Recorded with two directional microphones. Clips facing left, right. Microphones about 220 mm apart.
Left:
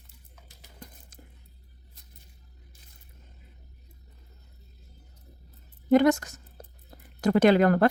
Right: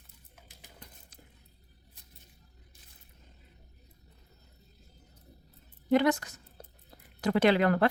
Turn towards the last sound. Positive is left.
turn(degrees=45)  # may be behind; listen again after turning